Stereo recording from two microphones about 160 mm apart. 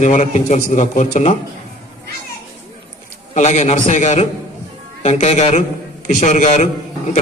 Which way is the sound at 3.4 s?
45° left (ahead or behind).